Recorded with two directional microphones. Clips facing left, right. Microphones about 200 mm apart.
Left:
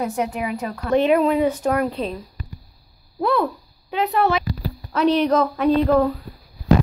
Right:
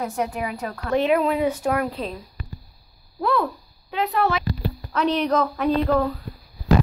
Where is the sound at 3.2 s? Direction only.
10° left (ahead or behind).